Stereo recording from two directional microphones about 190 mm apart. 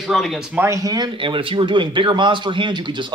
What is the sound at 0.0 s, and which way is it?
Speech, centre (ahead or behind).